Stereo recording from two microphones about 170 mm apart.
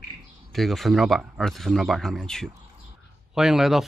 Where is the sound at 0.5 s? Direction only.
Centre (ahead or behind).